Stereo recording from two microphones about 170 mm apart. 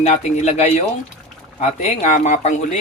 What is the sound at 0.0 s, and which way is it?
Speech, 40° left (ahead or behind).